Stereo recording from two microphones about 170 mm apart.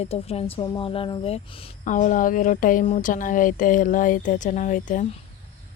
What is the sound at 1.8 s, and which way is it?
Speech, 50° left (ahead or behind).